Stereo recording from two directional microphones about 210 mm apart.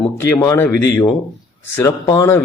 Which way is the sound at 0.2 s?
15° left (ahead or behind).